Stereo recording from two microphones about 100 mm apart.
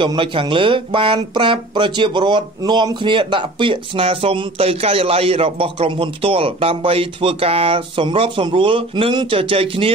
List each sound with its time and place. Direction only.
0.0 s speech: 55° right (ahead or behind)